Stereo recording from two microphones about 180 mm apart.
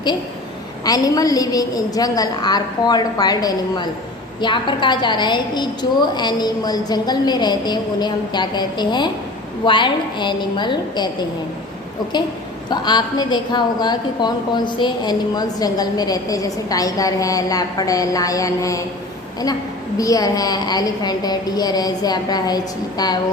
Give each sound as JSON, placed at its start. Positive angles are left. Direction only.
{"t": 0.9, "sound": "a woman's voice", "side_deg": 20}
{"t": 12.7, "sound": "a woman's voice", "side_deg": 25}
{"t": 20.0, "sound": "a woman's voice", "side_deg": 20}